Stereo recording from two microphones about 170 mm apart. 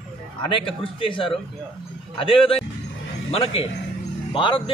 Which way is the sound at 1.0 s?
30° left (ahead or behind).